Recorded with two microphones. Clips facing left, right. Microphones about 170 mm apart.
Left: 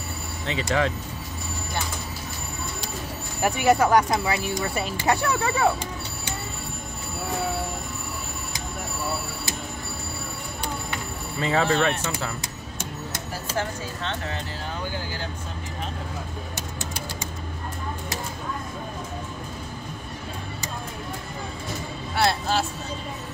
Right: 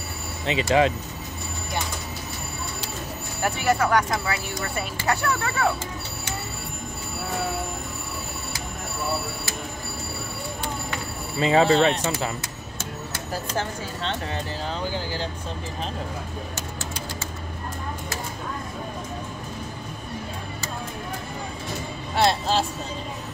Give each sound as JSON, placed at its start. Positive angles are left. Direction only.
{"t": 0.5, "sound": "speech", "side_deg": -20}
{"t": 3.4, "sound": "speech", "side_deg": 15}
{"t": 11.3, "sound": "speech", "side_deg": -20}